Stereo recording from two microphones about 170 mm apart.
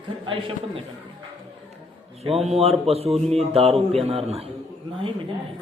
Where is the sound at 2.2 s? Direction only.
35° right (ahead or behind).